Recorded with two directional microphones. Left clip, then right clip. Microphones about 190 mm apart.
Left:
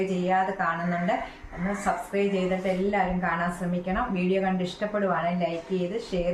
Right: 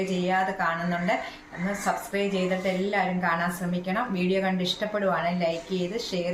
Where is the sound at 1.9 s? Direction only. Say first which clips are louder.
Left 1 dB; 5° right (ahead or behind).